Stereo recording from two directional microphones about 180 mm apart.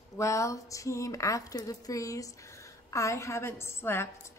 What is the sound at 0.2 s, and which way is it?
Speech, 15° left (ahead or behind).